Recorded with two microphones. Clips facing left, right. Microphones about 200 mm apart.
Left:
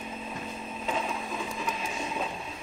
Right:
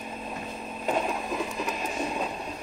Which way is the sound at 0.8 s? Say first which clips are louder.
Right 5 dB; 50° right (ahead or behind).